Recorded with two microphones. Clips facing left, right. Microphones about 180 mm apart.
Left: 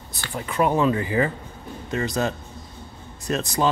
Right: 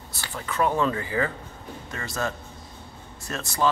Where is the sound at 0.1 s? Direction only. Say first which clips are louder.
Left 3 dB; 15° left (ahead or behind).